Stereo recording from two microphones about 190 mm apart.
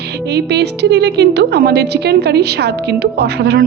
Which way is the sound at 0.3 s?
60° right (ahead or behind).